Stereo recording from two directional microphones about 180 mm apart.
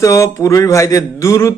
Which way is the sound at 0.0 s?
15° left (ahead or behind).